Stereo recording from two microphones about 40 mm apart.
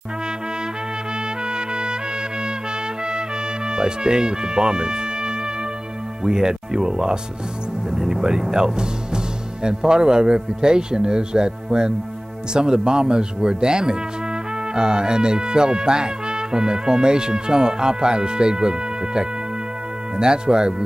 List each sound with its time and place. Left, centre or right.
1.4 s trumpet: right
3.1 s music: centre
6.2 s speech: centre